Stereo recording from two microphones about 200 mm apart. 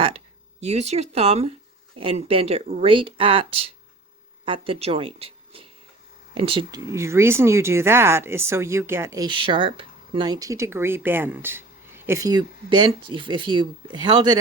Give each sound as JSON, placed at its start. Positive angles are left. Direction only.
{"t": 0.6, "sound": "speech", "side_deg": -35}